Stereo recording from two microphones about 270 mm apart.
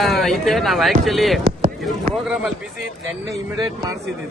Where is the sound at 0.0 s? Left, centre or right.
Centre.